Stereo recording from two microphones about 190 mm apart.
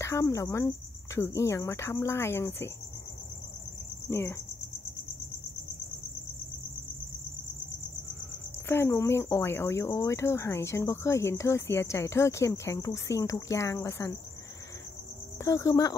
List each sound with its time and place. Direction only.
0.0 s speech: 15° left (ahead or behind)
4.1 s speech: 15° left (ahead or behind)
8.6 s speech: 15° left (ahead or behind)
15.3 s speech: 15° left (ahead or behind)